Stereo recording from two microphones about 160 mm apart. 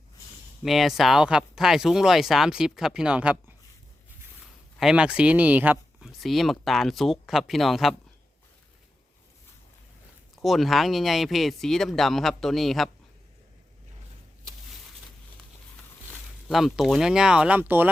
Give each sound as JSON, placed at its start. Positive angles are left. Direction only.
{"t": 0.6, "sound": "speech", "side_deg": 0}
{"t": 4.8, "sound": "speech", "side_deg": -5}
{"t": 10.3, "sound": "speech", "side_deg": 0}
{"t": 16.5, "sound": "speech", "side_deg": 0}